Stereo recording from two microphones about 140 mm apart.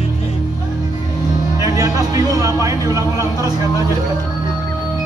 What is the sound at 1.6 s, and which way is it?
A man's voice, 25° right (ahead or behind).